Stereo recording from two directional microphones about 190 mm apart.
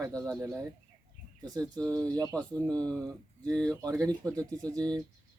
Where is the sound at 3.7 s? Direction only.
15° right (ahead or behind).